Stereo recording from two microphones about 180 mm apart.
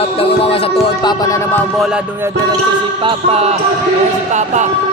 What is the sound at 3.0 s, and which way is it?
Music, 30° right (ahead or behind).